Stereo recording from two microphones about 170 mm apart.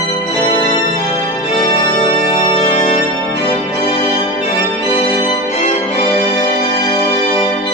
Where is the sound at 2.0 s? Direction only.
35° left (ahead or behind).